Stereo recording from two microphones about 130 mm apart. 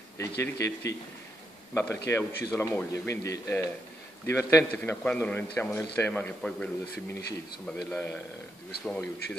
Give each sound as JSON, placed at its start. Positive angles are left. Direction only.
{"t": 0.2, "sound": "a man's voice", "side_deg": 20}
{"t": 4.7, "sound": "a man's voice", "side_deg": 10}